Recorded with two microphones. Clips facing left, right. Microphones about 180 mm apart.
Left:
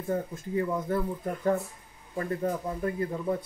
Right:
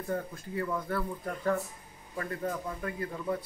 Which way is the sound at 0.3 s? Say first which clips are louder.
Left 4 dB; 20° left (ahead or behind).